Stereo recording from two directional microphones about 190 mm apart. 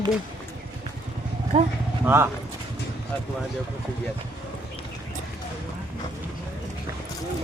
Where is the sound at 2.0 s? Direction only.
10° right (ahead or behind).